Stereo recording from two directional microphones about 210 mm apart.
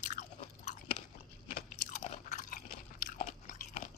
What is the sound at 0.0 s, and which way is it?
Chewing, 35° left (ahead or behind).